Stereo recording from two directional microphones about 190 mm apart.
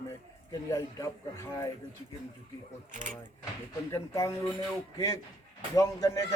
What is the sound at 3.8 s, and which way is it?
Speech, 15° left (ahead or behind).